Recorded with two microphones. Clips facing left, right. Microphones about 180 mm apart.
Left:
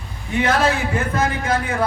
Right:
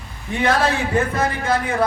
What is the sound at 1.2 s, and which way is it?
Speech, 30° right (ahead or behind).